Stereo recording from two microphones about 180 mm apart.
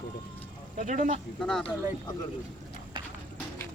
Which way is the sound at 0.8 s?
45° right (ahead or behind).